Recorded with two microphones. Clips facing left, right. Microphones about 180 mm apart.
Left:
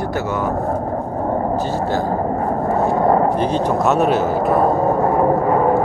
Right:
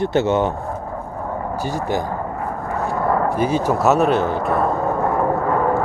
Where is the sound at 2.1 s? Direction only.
40° left (ahead or behind).